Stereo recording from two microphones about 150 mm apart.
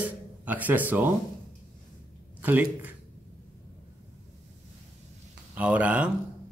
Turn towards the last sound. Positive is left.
turn(degrees=-10)  # may be behind; listen again after turning